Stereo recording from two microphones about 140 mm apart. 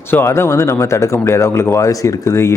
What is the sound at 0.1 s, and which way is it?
Speech, 15° left (ahead or behind).